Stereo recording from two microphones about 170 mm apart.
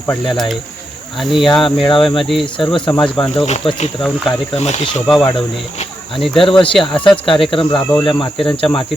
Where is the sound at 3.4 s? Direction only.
40° left (ahead or behind).